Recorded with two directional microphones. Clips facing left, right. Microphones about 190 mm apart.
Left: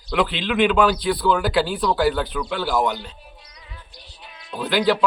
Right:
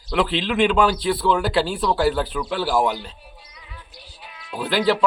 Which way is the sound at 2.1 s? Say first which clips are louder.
Right 1 dB; 5° right (ahead or behind).